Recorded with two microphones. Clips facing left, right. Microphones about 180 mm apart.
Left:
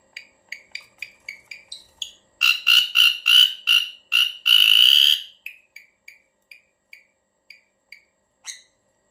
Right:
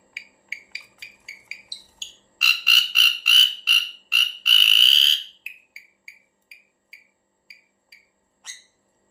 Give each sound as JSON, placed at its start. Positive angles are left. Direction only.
{"t": 0.1, "sound": "music", "side_deg": 35}
{"t": 1.2, "sound": "music", "side_deg": 0}
{"t": 2.0, "sound": "frog", "side_deg": 0}
{"t": 8.4, "sound": "a sound", "side_deg": 5}